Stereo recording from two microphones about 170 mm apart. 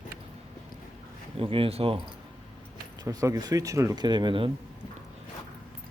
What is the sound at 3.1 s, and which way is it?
Speech, 20° right (ahead or behind).